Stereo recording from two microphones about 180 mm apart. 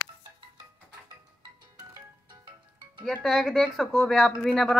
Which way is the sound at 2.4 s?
25° right (ahead or behind).